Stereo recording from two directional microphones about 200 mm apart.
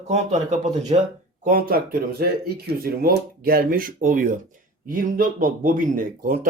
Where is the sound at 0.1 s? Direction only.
35° right (ahead or behind).